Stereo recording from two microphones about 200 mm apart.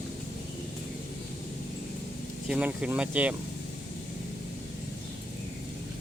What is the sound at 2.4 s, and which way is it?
Speech, 5° right (ahead or behind).